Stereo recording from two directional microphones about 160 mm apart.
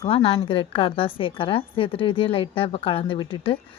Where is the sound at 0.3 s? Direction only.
30° left (ahead or behind).